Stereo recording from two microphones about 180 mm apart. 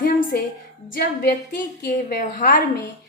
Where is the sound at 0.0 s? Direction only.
50° left (ahead or behind).